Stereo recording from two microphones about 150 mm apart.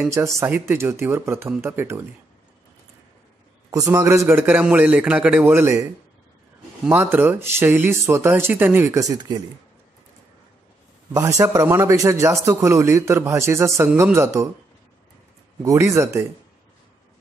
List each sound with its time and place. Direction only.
0.1 s a man's voice: 20° right (ahead or behind)
3.7 s speech: 20° right (ahead or behind)
6.9 s speech: 15° right (ahead or behind)
11.1 s a man's voice: 20° right (ahead or behind)
15.6 s a man's voice: 20° right (ahead or behind)